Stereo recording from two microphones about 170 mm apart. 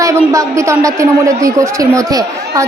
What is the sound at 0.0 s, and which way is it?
A man's voice, 20° right (ahead or behind).